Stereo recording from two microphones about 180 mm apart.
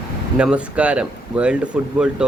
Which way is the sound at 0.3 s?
5° right (ahead or behind).